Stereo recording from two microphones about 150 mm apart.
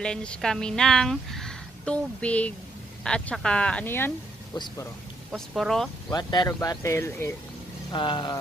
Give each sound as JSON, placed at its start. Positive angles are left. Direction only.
{"t": 0.0, "sound": "a woman's voice", "side_deg": 5}
{"t": 5.3, "sound": "a woman's voice", "side_deg": 0}
{"t": 6.0, "sound": "speech", "side_deg": 25}
{"t": 7.9, "sound": "speech", "side_deg": 30}